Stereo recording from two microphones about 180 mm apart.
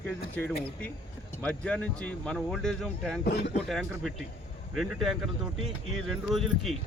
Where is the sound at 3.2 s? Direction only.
65° left (ahead or behind).